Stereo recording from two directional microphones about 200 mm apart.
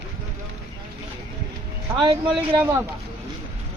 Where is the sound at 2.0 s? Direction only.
25° right (ahead or behind).